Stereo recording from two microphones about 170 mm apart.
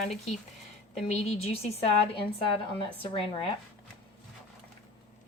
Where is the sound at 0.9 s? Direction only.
40° left (ahead or behind).